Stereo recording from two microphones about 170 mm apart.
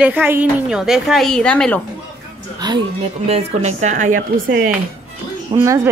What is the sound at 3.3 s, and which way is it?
A woman's voice, 40° right (ahead or behind).